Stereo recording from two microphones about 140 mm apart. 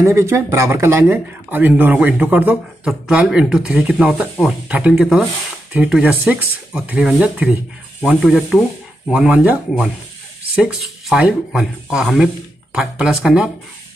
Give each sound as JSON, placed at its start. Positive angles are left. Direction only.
{"t": 0.0, "sound": "speech", "side_deg": -20}